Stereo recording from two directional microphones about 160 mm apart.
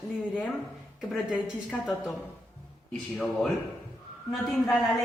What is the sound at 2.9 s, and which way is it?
Speech, centre (ahead or behind).